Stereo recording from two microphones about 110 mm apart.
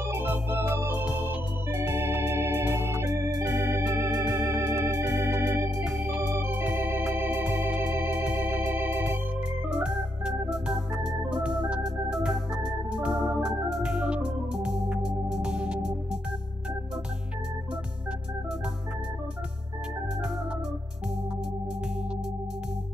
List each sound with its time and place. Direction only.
0.0 s organ: 20° right (ahead or behind)
5.9 s organ: 10° right (ahead or behind)